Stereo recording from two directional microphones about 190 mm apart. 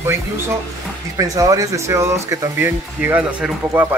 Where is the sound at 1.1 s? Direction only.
15° right (ahead or behind).